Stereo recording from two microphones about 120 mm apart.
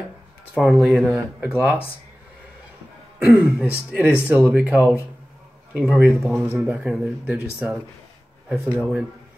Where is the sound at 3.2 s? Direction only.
5° right (ahead or behind).